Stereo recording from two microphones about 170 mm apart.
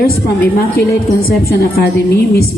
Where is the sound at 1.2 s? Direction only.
65° left (ahead or behind).